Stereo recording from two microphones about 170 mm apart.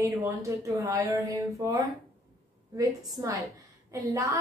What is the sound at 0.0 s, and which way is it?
Speech, 20° right (ahead or behind).